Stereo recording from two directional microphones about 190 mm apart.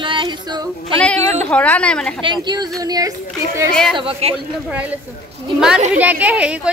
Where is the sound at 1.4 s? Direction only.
5° left (ahead or behind).